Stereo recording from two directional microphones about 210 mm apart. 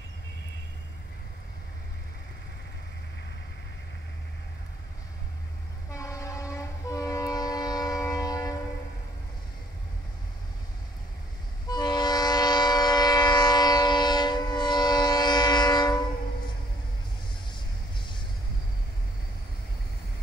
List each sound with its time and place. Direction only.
5.9 s train: 15° left (ahead or behind)
11.7 s train: 20° left (ahead or behind)